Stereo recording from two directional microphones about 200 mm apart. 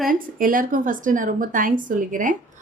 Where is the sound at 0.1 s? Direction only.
45° right (ahead or behind).